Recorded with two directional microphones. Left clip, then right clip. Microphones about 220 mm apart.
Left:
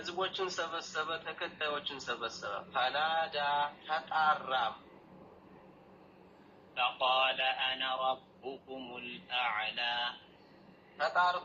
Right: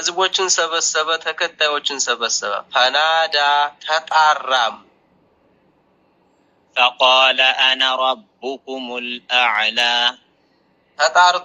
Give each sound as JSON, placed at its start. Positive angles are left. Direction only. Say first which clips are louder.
{"t": 0.0, "sound": "speech", "louder": "right 18 dB", "side_deg": -50}
{"t": 6.7, "sound": "speech", "louder": "right 17 dB", "side_deg": -50}